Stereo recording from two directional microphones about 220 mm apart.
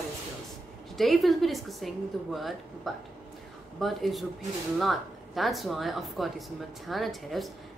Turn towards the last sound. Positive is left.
turn(degrees=0)  # may be behind; listen again after turning